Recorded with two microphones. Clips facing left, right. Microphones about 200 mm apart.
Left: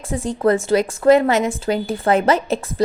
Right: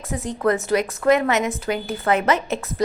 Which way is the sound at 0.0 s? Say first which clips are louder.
Left 4 dB; 30° left (ahead or behind).